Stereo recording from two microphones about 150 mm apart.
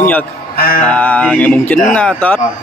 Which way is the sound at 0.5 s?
90° left.